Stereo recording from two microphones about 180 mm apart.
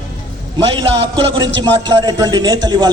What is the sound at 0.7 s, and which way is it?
A man's voice, 25° right (ahead or behind).